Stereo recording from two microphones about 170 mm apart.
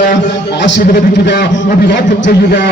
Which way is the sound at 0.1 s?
90° left.